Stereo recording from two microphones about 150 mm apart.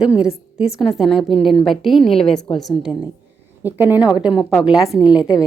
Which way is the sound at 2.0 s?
40° left (ahead or behind).